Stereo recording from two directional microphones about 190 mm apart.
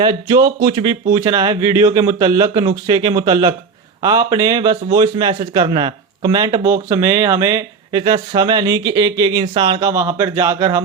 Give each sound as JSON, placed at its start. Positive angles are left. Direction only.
{"t": 0.0, "sound": "a man's voice", "side_deg": -25}